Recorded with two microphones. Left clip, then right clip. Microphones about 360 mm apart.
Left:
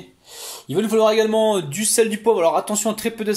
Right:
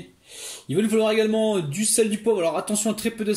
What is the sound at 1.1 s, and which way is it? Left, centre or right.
Speech, left.